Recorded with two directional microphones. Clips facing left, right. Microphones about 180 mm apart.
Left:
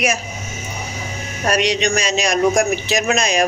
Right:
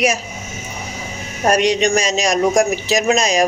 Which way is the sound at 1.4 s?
45° right (ahead or behind).